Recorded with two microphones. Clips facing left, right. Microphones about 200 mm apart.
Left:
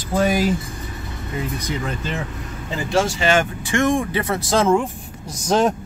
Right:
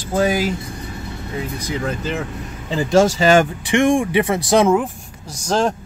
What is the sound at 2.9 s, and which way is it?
Speech, 40° right (ahead or behind).